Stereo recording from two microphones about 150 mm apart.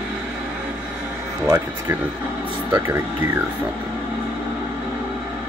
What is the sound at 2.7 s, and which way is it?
Speech, 15° right (ahead or behind).